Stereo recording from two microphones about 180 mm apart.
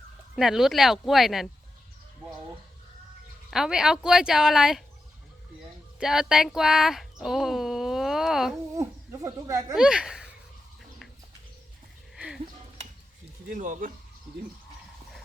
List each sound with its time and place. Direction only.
0.3 s a woman's voice: centre (ahead or behind)
3.5 s a woman's voice: 5° right (ahead or behind)
6.0 s speech: centre (ahead or behind)
8.7 s speech: 20° right (ahead or behind)
9.7 s speech: 5° right (ahead or behind)
12.1 s a sound: 5° right (ahead or behind)
13.5 s speech: 45° right (ahead or behind)